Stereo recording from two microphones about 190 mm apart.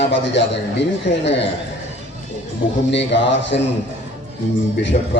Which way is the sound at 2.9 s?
70° left (ahead or behind).